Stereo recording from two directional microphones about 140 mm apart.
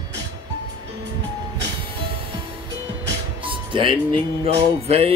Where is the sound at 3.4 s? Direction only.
40° right (ahead or behind).